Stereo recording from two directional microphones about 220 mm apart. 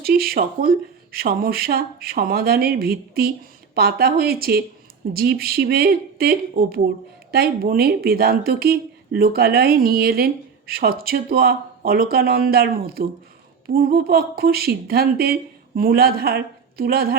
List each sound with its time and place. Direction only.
0.0 s a woman's voice: 45° right (ahead or behind)